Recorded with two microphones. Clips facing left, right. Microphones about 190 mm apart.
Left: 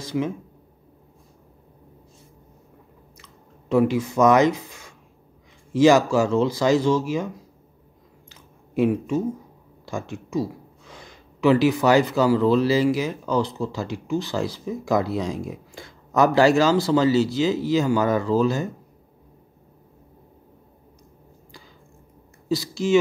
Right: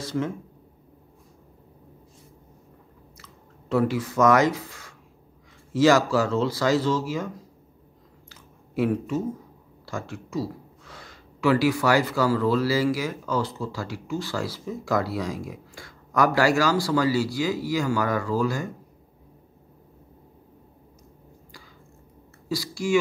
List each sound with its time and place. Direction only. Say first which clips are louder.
3.2 s speech: even; 15° left (ahead or behind)
8.3 s a sound: left 1 dB; 20° left (ahead or behind)
9.8 s speech: left 3 dB; 20° left (ahead or behind)
22.5 s speech: left 4 dB; 20° left (ahead or behind)